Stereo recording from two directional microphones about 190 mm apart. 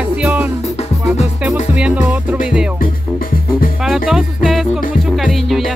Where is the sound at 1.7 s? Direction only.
5° right (ahead or behind).